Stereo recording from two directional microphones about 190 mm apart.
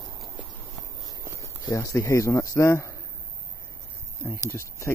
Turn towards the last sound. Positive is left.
turn(degrees=15)  # may be behind; listen again after turning